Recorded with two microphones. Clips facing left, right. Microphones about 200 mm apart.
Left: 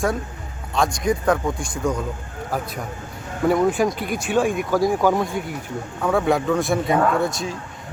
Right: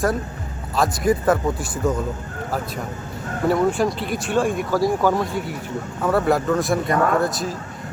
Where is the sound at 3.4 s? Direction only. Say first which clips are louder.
Left 1 dB; centre (ahead or behind).